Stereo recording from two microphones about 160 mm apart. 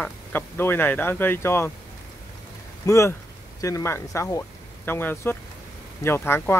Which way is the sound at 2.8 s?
20° left (ahead or behind).